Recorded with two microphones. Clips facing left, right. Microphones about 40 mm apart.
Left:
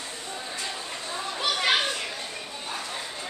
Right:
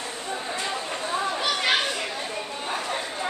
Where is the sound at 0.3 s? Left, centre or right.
Right.